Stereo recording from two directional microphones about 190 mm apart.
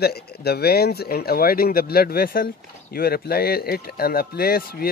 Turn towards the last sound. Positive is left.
turn(degrees=50)  # may be behind; listen again after turning